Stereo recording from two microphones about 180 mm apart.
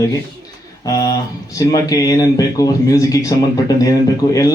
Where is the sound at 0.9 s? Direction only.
20° left (ahead or behind).